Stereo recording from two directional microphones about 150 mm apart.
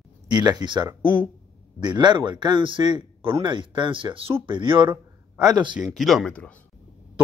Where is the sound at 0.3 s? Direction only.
30° right (ahead or behind).